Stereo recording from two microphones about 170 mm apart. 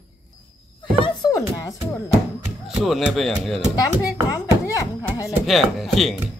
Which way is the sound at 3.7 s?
20° left (ahead or behind).